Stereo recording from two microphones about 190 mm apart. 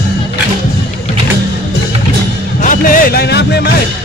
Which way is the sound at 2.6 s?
45° left (ahead or behind).